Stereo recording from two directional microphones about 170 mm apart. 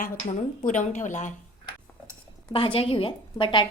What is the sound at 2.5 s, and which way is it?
A woman's voice, 30° left (ahead or behind).